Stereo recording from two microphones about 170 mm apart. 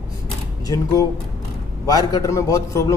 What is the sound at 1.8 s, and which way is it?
Speech, 20° left (ahead or behind).